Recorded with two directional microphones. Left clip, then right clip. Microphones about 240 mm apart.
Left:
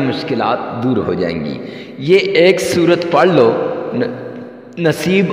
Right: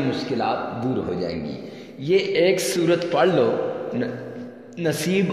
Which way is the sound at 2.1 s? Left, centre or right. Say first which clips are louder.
Left 8 dB; left.